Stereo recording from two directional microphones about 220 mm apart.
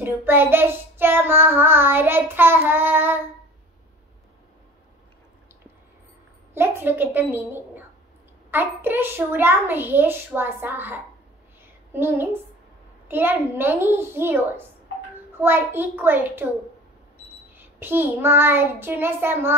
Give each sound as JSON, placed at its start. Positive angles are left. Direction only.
{"t": 0.0, "sound": "child singing", "side_deg": -10}
{"t": 6.5, "sound": "child singing", "side_deg": -10}
{"t": 15.4, "sound": "child singing", "side_deg": -10}
{"t": 17.6, "sound": "child singing", "side_deg": -10}